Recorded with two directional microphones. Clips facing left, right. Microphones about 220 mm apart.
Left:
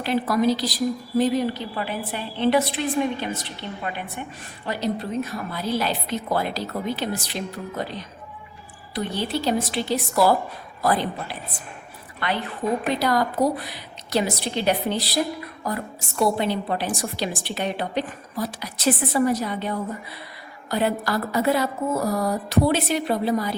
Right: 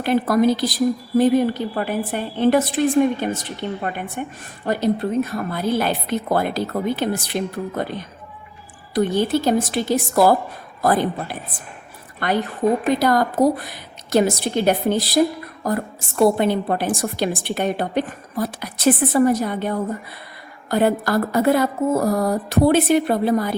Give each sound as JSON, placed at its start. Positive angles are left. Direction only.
{"t": 0.0, "sound": "a woman's voice", "side_deg": -50}